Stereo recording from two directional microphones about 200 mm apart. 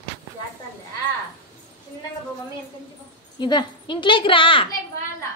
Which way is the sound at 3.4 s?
20° left (ahead or behind).